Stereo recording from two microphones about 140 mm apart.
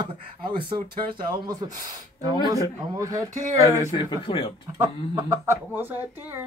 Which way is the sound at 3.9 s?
30° left (ahead or behind).